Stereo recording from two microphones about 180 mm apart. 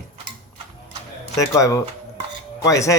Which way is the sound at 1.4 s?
15° left (ahead or behind).